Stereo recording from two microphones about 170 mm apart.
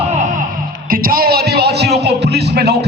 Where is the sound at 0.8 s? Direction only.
60° right (ahead or behind); by 2.7 s 75° right (ahead or behind).